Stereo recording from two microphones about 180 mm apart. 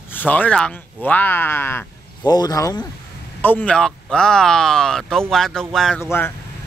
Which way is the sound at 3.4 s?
10° left (ahead or behind).